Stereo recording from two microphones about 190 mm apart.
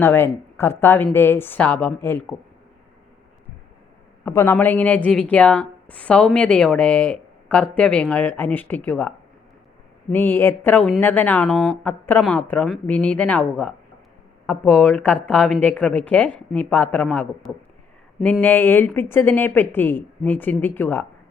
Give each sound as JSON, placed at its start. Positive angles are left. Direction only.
{"t": 0.0, "sound": "a woman's voice", "side_deg": 10}
{"t": 4.3, "sound": "a woman's voice", "side_deg": 10}
{"t": 14.4, "sound": "a woman's voice", "side_deg": 5}